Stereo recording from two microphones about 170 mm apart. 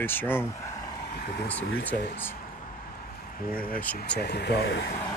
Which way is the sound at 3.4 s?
55° left (ahead or behind).